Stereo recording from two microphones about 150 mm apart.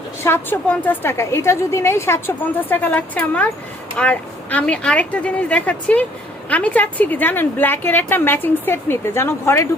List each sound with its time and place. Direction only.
0.2 s a woman's voice: 15° left (ahead or behind)